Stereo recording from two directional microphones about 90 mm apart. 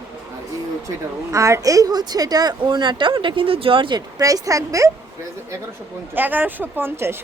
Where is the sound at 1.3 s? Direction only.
35° right (ahead or behind); by 4.0 s 70° right (ahead or behind).